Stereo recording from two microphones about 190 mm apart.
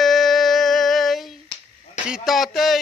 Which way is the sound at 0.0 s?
Centre (ahead or behind).